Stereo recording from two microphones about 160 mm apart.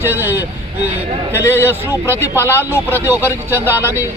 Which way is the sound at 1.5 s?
15° right (ahead or behind).